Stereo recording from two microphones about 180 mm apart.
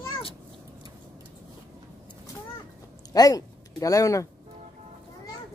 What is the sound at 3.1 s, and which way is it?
Speech, 20° left (ahead or behind).